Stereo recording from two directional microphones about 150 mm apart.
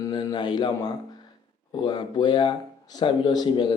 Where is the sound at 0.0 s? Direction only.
30° left (ahead or behind).